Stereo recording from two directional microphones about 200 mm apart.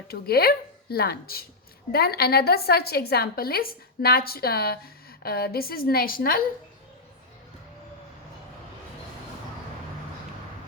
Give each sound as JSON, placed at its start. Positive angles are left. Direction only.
{"t": 0.1, "sound": "a woman's voice", "side_deg": 50}